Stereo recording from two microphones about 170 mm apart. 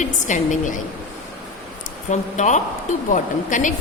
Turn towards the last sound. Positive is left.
turn(degrees=50)  # may be behind; listen again after turning